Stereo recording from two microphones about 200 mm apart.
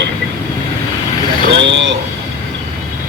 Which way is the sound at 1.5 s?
65° right (ahead or behind).